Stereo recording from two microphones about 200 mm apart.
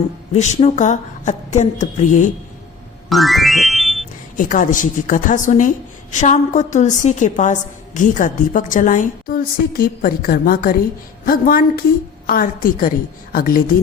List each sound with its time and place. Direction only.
0.3 s a woman's voice: 35° left (ahead or behind)
3.1 s music: centre (ahead or behind)
4.4 s a woman's voice: 40° left (ahead or behind)